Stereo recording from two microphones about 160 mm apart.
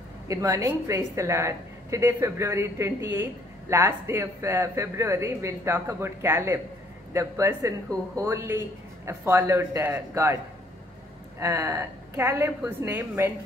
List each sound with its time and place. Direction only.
0.3 s a woman's voice: 20° right (ahead or behind)
11.3 s a woman's voice: 20° right (ahead or behind)